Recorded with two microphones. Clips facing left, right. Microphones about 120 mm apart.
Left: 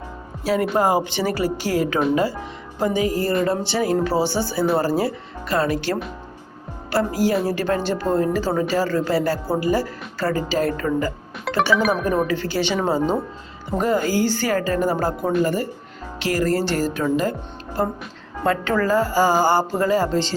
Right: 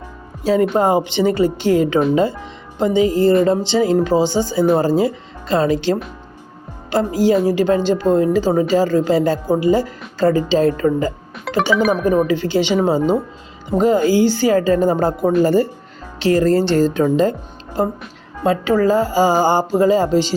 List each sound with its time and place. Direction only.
0.4 s speech: 25° right (ahead or behind)
11.8 s speech: centre (ahead or behind)
12.0 s speech: 10° right (ahead or behind); by 17.0 s 25° right (ahead or behind)
18.6 s speech: 15° right (ahead or behind)